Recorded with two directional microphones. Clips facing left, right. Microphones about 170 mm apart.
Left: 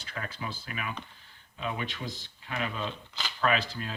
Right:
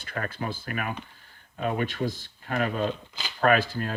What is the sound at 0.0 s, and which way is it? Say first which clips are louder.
Speech: right 6 dB; 55° right (ahead or behind).